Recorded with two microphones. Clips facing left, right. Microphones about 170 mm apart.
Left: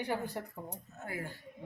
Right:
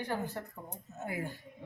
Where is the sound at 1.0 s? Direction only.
20° right (ahead or behind).